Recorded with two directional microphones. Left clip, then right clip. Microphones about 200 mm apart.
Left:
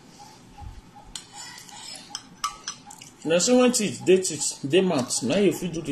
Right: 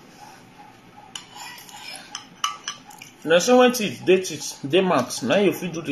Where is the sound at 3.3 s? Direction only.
10° left (ahead or behind).